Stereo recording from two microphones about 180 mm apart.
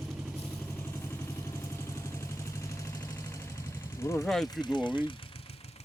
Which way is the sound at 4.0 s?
15° left (ahead or behind).